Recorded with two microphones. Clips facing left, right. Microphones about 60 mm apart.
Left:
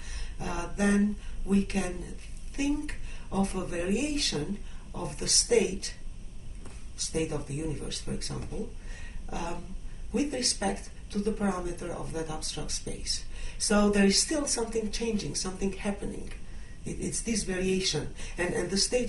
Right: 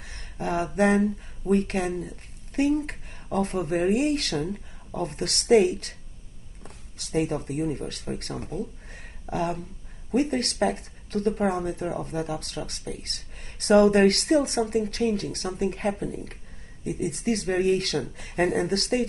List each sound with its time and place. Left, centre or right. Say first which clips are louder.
0.0 s a sound: right 7 dB; right
0.7 s speech: right 4 dB; right
7.0 s speech: right 5 dB; right